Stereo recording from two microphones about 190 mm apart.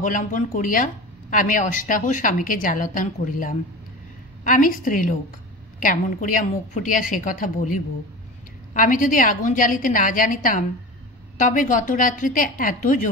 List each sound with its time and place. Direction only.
0.0 s a woman's voice: 45° left (ahead or behind)